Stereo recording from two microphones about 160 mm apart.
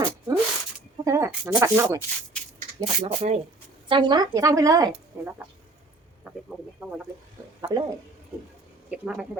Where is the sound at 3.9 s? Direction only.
30° right (ahead or behind).